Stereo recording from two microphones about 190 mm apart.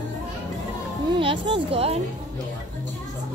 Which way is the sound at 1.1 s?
25° right (ahead or behind).